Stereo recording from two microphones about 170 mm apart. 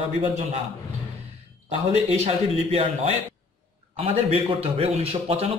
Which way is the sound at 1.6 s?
40° right (ahead or behind).